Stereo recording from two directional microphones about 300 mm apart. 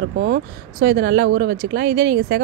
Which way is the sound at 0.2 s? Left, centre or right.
Right.